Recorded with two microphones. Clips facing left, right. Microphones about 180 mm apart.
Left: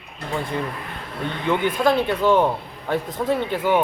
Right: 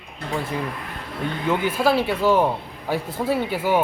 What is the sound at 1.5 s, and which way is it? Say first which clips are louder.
A man's voice: left 1 dB; 5° right (ahead or behind).